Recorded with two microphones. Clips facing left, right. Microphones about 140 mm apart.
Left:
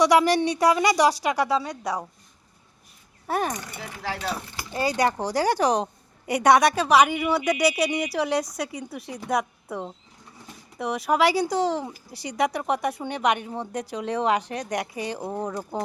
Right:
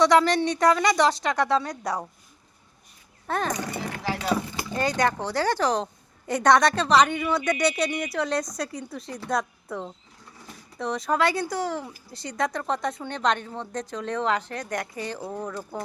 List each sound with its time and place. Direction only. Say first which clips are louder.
0.0 s speech: left 1 dB; 10° left (ahead or behind)
3.2 s a child's voice: left 2 dB; 10° left (ahead or behind)
3.5 s speech: right 5 dB; 85° right
4.8 s speech: left 1 dB; 10° left (ahead or behind)